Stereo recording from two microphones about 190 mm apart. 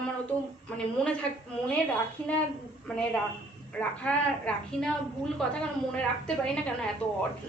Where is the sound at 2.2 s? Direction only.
10° left (ahead or behind).